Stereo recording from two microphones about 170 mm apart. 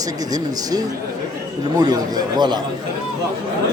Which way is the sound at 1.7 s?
25° right (ahead or behind).